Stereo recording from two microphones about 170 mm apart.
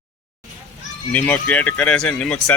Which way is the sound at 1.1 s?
10° left (ahead or behind).